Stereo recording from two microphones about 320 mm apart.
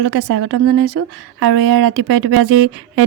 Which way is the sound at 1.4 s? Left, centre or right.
Right.